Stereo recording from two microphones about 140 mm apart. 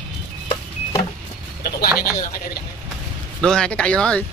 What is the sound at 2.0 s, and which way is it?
Speech, 90° left.